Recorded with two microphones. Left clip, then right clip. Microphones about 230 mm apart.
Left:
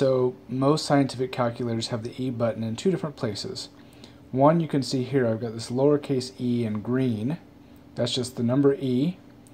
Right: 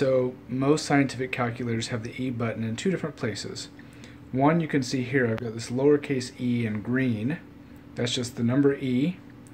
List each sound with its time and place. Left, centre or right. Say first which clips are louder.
0.0 s speech: left 1 dB; centre